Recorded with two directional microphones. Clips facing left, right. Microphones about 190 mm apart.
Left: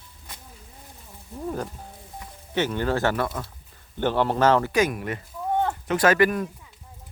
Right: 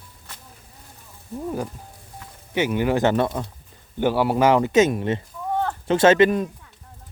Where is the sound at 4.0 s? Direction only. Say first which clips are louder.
Right 3 dB; 10° right (ahead or behind).